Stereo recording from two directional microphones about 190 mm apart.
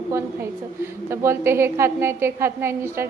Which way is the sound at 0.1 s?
15° right (ahead or behind).